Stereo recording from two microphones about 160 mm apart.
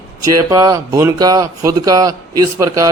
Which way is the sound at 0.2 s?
25° right (ahead or behind).